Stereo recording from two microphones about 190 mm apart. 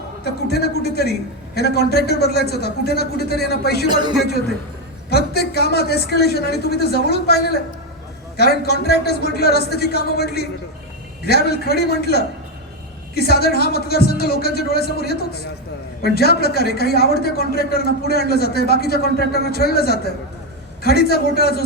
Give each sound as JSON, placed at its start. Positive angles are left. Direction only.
{"t": 0.4, "sound": "a man's voice", "side_deg": 60}
{"t": 3.8, "sound": "a man's voice", "side_deg": -25}
{"t": 5.0, "sound": "a man's voice", "side_deg": 55}